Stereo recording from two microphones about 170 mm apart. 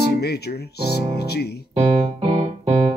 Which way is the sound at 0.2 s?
75° left (ahead or behind).